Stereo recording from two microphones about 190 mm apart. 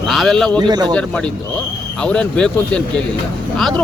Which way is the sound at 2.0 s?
5° left (ahead or behind).